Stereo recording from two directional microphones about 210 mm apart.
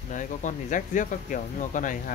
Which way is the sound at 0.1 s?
35° left (ahead or behind).